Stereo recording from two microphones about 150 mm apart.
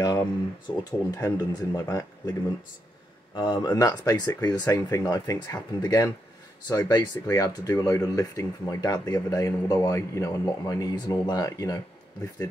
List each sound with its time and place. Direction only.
0.0 s a sound: 25° left (ahead or behind)
0.8 s speech: 25° left (ahead or behind)
3.3 s speech: 30° left (ahead or behind)